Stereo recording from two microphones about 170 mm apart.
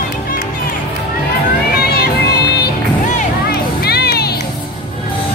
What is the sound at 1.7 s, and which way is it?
Music, 70° left (ahead or behind).